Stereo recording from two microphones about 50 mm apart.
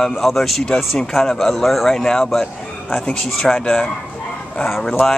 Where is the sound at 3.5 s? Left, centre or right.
Centre.